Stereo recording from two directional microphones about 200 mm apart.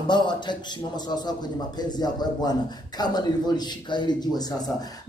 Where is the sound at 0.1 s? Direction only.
20° left (ahead or behind).